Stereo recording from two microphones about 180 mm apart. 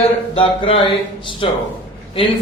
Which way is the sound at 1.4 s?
30° left (ahead or behind).